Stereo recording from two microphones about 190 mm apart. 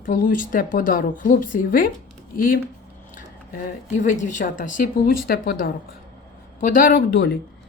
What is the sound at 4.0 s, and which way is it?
Speech, 40° left (ahead or behind).